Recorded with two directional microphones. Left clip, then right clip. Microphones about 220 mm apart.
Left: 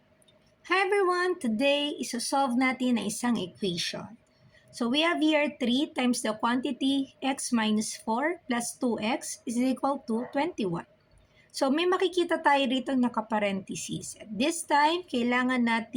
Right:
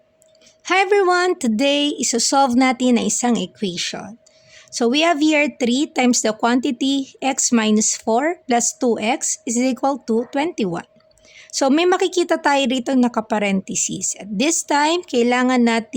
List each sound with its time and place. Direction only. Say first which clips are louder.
0.6 s speech: right 9 dB; 45° right (ahead or behind)